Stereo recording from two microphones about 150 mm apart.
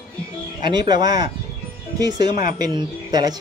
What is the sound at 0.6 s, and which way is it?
Speech, 30° right (ahead or behind).